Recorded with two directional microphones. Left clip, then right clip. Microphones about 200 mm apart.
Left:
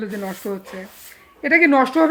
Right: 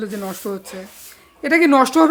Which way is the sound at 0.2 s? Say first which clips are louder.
Right 1 dB; 15° right (ahead or behind).